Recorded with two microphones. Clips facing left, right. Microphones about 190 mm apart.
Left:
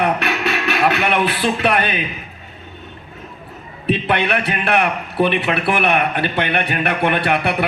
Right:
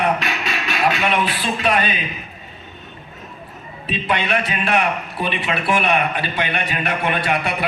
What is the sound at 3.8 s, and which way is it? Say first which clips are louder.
A man's voice: left 4 dB; 60° left (ahead or behind).